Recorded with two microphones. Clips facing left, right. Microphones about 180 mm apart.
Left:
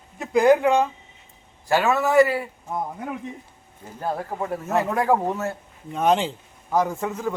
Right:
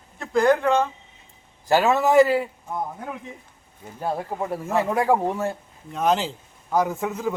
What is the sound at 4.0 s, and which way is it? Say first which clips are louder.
A man's voice: right 1 dB; 10° right (ahead or behind).